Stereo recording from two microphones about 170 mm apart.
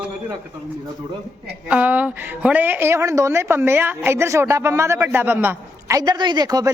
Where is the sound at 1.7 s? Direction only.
10° right (ahead or behind).